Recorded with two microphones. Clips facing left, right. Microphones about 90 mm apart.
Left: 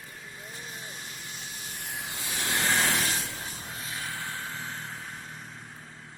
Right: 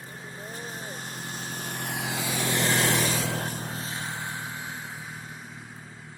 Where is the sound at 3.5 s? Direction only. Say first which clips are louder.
Right 5 dB; 40° right (ahead or behind); by 5.0 s 10° right (ahead or behind).